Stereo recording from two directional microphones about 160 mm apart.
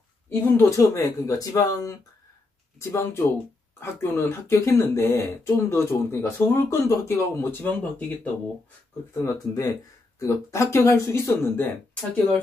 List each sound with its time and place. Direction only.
0.3 s speech: 15° left (ahead or behind)
9.1 s speech: 15° left (ahead or behind)